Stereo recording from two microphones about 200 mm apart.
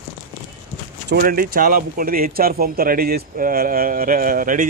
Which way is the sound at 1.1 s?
45° right (ahead or behind).